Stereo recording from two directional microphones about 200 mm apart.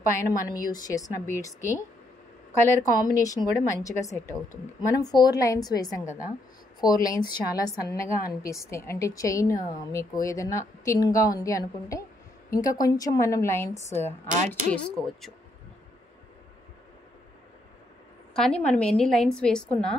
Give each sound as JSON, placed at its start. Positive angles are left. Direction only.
{"t": 0.1, "sound": "a woman's voice", "side_deg": 15}
{"t": 18.3, "sound": "a woman's voice", "side_deg": 5}